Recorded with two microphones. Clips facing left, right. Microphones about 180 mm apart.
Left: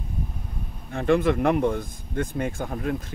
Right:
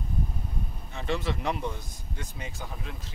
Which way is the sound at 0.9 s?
55° left (ahead or behind).